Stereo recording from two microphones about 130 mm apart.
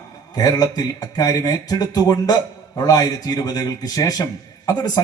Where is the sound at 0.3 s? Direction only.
30° left (ahead or behind).